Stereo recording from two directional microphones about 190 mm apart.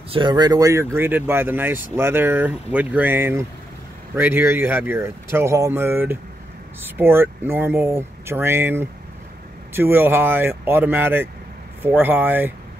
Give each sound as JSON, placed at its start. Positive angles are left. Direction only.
{"t": 0.1, "sound": "speech", "side_deg": -25}